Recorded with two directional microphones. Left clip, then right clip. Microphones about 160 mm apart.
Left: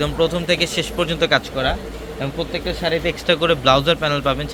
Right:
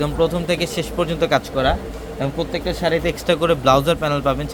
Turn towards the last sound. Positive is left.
turn(degrees=-5)  # may be behind; listen again after turning